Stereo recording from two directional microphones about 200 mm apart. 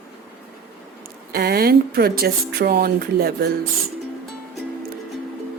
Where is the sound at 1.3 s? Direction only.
50° right (ahead or behind).